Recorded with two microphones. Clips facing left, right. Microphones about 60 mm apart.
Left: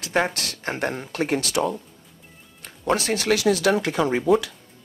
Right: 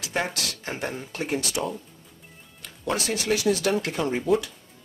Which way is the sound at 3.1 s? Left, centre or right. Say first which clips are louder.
Left 3 dB; left.